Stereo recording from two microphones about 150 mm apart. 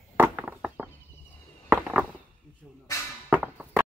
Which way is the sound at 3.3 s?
5° right (ahead or behind).